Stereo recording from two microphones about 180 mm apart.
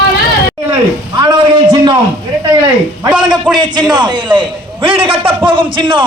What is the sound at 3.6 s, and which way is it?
A man's voice, 25° right (ahead or behind).